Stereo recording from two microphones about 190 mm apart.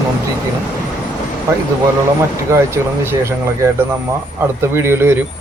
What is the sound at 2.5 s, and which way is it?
Speech, 15° right (ahead or behind).